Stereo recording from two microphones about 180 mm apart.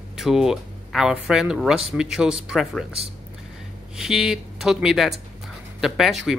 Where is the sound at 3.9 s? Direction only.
Centre (ahead or behind).